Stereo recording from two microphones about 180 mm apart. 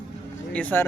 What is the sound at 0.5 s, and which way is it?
Speech, 10° left (ahead or behind).